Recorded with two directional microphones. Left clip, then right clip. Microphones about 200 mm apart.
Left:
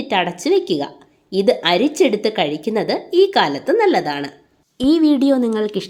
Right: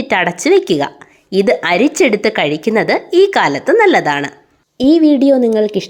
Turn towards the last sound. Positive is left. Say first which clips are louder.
# right 6 dB
turn(degrees=-10)  # may be behind; listen again after turning